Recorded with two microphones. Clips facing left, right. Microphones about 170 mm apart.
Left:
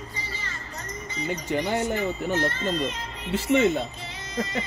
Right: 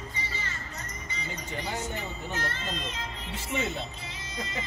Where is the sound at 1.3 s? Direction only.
70° left (ahead or behind).